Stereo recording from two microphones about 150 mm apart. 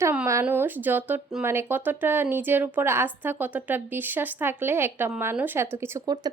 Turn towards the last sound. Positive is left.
turn(degrees=-25)  # may be behind; listen again after turning